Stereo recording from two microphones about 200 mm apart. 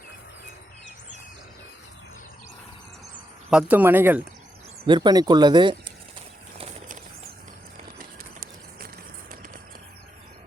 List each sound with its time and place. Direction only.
3.5 s speech: 5° right (ahead or behind)
4.9 s speech: 20° right (ahead or behind)
6.6 s a sound: 35° right (ahead or behind)